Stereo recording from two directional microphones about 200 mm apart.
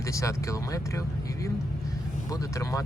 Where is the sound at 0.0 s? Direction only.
15° left (ahead or behind).